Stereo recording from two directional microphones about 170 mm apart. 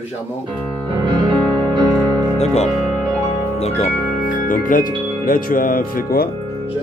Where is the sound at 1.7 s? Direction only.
25° right (ahead or behind).